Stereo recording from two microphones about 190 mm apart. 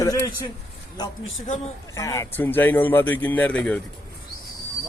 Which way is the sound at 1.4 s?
40° left (ahead or behind).